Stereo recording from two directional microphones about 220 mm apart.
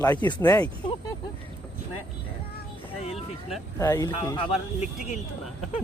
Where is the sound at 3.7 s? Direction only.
15° left (ahead or behind).